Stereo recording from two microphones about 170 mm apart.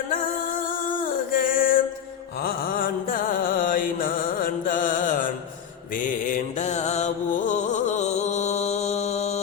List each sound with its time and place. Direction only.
0.9 s a sound: 55° left (ahead or behind)
2.4 s music: 55° left (ahead or behind)
6.0 s mantra: 50° left (ahead or behind)